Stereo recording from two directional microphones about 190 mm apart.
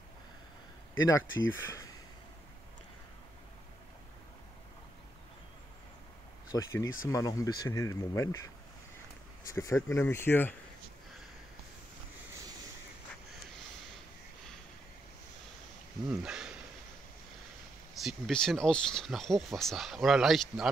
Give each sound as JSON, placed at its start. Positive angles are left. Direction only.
{"t": 0.9, "sound": "speech", "side_deg": 90}
{"t": 1.7, "sound": "a sound", "side_deg": 20}
{"t": 6.5, "sound": "speech", "side_deg": 20}
{"t": 9.5, "sound": "speech", "side_deg": 15}
{"t": 16.1, "sound": "speech", "side_deg": -5}
{"t": 17.9, "sound": "speech", "side_deg": 0}